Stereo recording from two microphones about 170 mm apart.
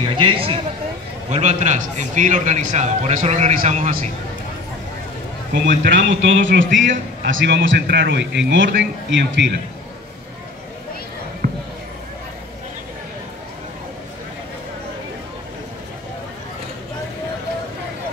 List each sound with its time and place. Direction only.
0.0 s speech: 30° right (ahead or behind)
1.3 s a man's voice: 45° right (ahead or behind)
5.9 s a man's voice: 90° right
11.4 s basketball bounce: 55° right (ahead or behind)